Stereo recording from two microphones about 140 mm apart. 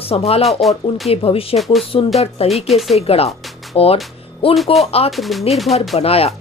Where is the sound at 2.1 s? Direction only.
50° left (ahead or behind).